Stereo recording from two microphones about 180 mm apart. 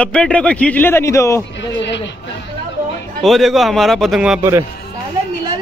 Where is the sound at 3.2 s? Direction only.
Centre (ahead or behind).